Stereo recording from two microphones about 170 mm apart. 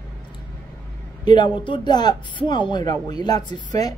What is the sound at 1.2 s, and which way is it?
Speech, 25° left (ahead or behind).